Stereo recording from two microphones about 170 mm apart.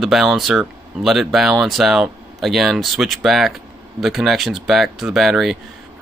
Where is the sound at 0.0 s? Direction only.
Centre (ahead or behind).